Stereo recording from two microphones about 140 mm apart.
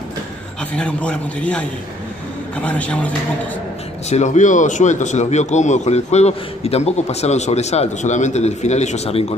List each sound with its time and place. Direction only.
0.7 s a man's voice: 10° left (ahead or behind)
4.1 s a man's voice: 55° left (ahead or behind)